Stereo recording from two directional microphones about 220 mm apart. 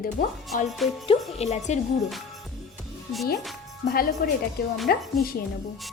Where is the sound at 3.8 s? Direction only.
40° left (ahead or behind).